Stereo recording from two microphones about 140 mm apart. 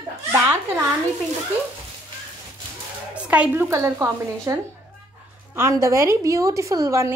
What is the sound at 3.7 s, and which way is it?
Speech, 20° right (ahead or behind).